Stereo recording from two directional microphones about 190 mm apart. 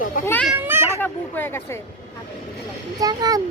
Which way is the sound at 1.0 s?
10° left (ahead or behind).